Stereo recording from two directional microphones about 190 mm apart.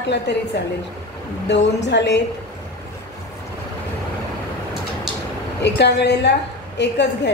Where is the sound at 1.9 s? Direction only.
70° left (ahead or behind).